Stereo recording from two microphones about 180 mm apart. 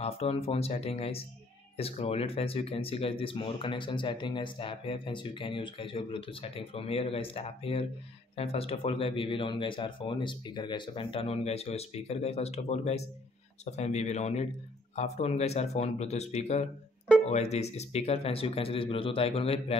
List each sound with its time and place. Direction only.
0.0 s speech: 35° left (ahead or behind)